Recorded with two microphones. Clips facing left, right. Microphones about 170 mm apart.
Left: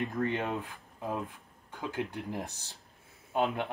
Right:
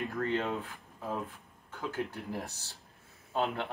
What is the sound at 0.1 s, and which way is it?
Speech, 15° left (ahead or behind).